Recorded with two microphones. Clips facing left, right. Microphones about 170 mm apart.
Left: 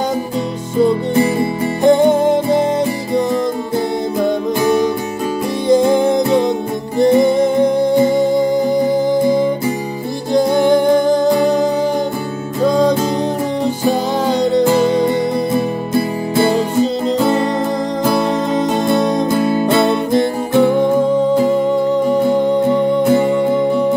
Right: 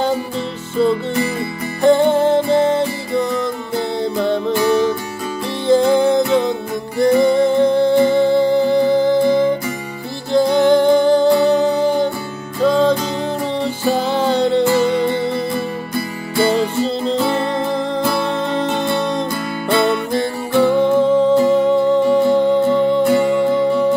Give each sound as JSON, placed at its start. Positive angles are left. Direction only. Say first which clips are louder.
{"t": 0.7, "sound": "music", "louder": "left 3 dB", "side_deg": 20}
{"t": 4.2, "sound": "music", "louder": "left 1 dB", "side_deg": 10}
{"t": 10.3, "sound": "music", "louder": "even", "side_deg": 15}
{"t": 12.6, "sound": "music", "louder": "left 1 dB", "side_deg": 15}
{"t": 15.5, "sound": "music", "louder": "left 6 dB", "side_deg": 25}
{"t": 18.0, "sound": "music", "louder": "left 3 dB", "side_deg": 10}